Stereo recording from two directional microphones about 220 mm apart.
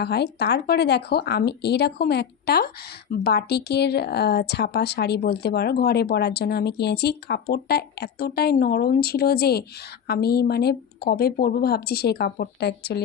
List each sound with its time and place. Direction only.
0.0 s speech: 50° left (ahead or behind)